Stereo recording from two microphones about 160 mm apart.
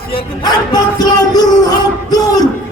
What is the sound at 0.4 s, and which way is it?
Speech, 25° left (ahead or behind).